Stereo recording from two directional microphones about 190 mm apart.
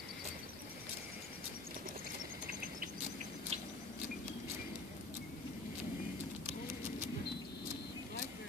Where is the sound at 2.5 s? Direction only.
45° right (ahead or behind).